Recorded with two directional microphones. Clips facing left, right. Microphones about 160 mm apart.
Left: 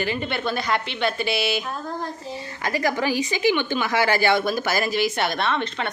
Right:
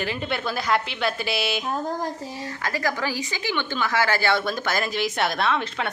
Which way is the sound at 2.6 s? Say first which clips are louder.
Left 4 dB; 20° left (ahead or behind).